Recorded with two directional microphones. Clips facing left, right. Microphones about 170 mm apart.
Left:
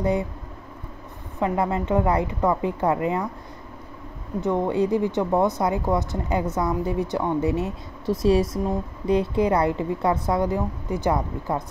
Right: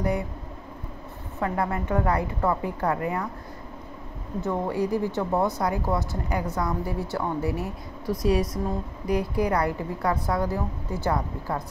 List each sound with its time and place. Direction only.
1.4 s speech: 20° left (ahead or behind)
4.4 s speech: 20° left (ahead or behind)